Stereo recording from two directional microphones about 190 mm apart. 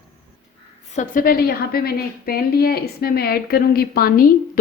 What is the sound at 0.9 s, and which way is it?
Speech, 40° left (ahead or behind).